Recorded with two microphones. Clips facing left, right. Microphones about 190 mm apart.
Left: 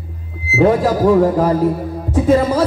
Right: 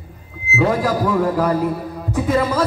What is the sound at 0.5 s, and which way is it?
Music, 30° left (ahead or behind).